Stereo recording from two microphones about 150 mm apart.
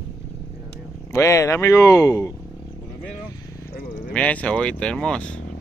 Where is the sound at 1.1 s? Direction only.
20° left (ahead or behind).